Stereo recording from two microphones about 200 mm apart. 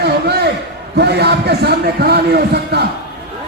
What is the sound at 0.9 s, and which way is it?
A man's voice, 55° right (ahead or behind).